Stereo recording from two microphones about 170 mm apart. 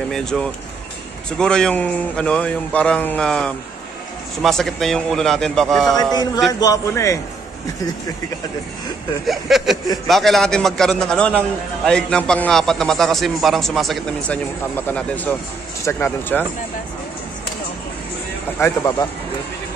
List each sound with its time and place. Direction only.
0.1 s a man's voice: 5° left (ahead or behind)
6.6 s a man's voice: 20° left (ahead or behind)
9.2 s a man's voice: centre (ahead or behind)
18.6 s a man's voice: 20° left (ahead or behind)